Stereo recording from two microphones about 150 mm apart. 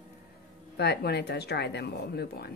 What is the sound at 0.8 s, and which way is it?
A woman's voice, 90° left.